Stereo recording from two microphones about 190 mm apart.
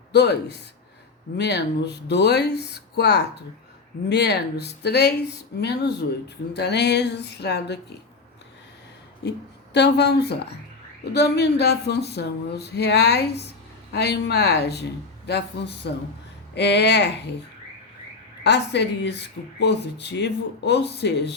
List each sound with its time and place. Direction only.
0.1 s speech: 60° left (ahead or behind)
9.2 s speech: 60° left (ahead or behind)
18.4 s speech: 65° left (ahead or behind)